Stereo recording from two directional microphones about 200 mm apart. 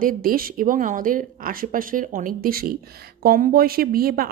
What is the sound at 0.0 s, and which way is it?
Speech, 45° right (ahead or behind).